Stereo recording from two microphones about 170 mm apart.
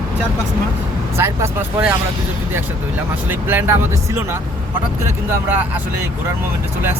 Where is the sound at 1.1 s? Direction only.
15° right (ahead or behind).